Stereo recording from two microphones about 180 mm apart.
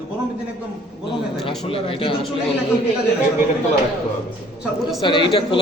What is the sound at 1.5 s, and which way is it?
Speech, 30° left (ahead or behind).